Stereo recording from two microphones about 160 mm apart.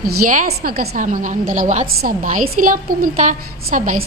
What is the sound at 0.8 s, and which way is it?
A woman's voice, 55° right (ahead or behind).